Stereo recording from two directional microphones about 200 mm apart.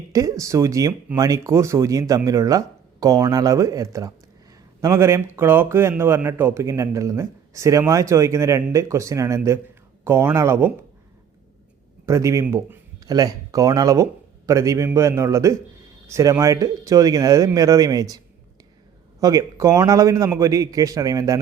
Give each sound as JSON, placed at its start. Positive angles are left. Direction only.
{"t": 0.1, "sound": "a man's voice", "side_deg": -15}
{"t": 12.0, "sound": "a man's voice", "side_deg": -15}
{"t": 19.2, "sound": "a man's voice", "side_deg": -15}